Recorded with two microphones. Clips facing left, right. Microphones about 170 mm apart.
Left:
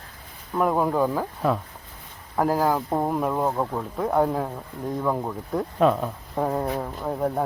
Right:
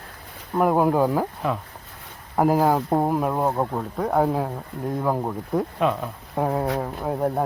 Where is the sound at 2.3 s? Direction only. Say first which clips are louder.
Right 3 dB; 15° right (ahead or behind).